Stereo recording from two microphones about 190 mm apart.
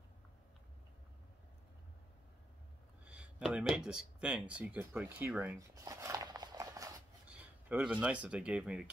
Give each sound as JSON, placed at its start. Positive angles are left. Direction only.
{"t": 3.1, "sound": "speech", "side_deg": -5}
{"t": 5.9, "sound": "a sound", "side_deg": -15}
{"t": 7.2, "sound": "speech", "side_deg": -5}